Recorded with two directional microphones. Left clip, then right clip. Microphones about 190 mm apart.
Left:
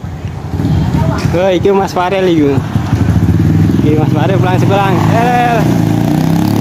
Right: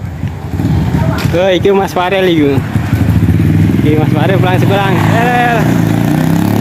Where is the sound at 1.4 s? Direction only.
5° left (ahead or behind).